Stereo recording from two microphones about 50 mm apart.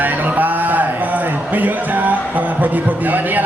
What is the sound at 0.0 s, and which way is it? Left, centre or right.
A man's voice, right.